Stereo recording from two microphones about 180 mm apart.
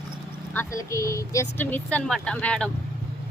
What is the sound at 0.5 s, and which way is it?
Speech, 15° left (ahead or behind).